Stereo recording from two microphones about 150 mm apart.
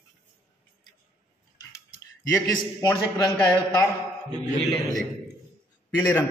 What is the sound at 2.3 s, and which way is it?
Speech, 25° left (ahead or behind).